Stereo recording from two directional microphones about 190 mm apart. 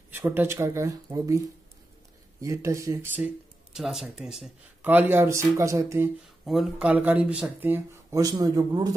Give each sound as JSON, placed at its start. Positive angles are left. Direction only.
{"t": 0.1, "sound": "speech", "side_deg": -10}
{"t": 2.4, "sound": "speech", "side_deg": -15}
{"t": 3.7, "sound": "speech", "side_deg": 0}
{"t": 6.4, "sound": "speech", "side_deg": 0}